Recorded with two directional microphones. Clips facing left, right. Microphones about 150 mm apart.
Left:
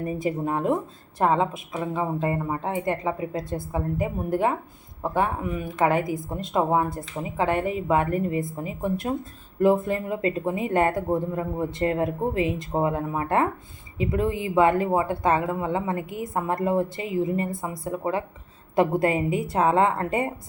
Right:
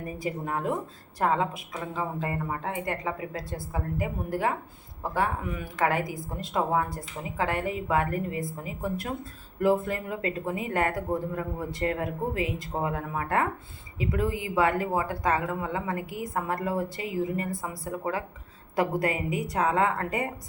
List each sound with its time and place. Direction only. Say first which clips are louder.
0.0 s speech: left 6 dB; 25° left (ahead or behind)